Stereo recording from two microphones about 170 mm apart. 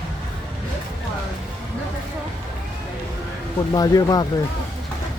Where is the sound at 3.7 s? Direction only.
20° left (ahead or behind).